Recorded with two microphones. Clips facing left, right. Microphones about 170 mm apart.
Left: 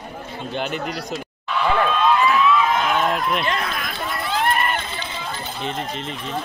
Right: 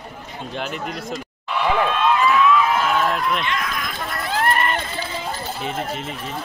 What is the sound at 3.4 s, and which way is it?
Run, 35° left (ahead or behind).